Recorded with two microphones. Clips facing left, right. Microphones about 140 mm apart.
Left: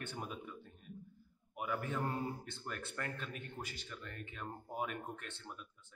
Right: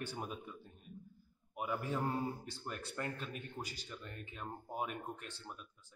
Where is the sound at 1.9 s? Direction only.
10° right (ahead or behind).